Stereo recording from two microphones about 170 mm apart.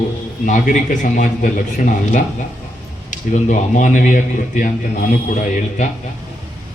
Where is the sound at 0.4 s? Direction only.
50° left (ahead or behind).